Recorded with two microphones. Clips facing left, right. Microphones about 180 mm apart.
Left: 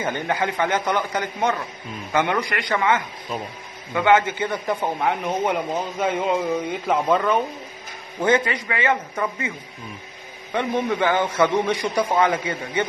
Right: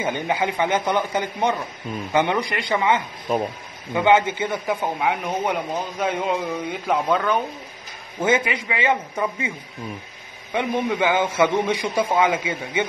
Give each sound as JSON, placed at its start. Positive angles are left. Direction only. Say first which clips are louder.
{"t": 0.0, "sound": "a man's voice", "louder": "right 1 dB", "side_deg": -10}
{"t": 3.3, "sound": "speech", "louder": "right 7 dB", "side_deg": -50}
{"t": 3.9, "sound": "a man's voice", "louder": "even", "side_deg": -20}
{"t": 4.6, "sound": "a man's voice", "louder": "even", "side_deg": 0}
{"t": 8.2, "sound": "a man's voice", "louder": "left 1 dB", "side_deg": -10}
{"t": 10.5, "sound": "a man's voice", "louder": "even", "side_deg": -10}